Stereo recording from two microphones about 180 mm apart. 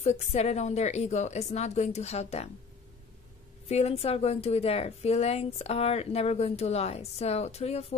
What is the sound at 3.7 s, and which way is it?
A woman's voice, 35° left (ahead or behind).